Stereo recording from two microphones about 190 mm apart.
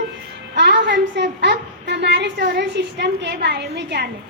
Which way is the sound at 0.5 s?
65° right (ahead or behind).